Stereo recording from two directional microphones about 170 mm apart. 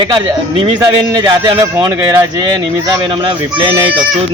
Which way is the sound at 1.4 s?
20° right (ahead or behind).